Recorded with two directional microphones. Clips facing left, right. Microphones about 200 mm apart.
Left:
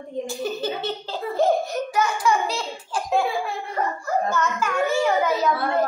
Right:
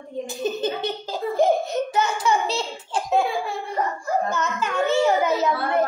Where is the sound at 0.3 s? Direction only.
20° right (ahead or behind).